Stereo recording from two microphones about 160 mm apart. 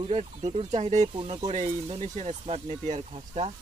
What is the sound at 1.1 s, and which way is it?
Speech, 35° right (ahead or behind).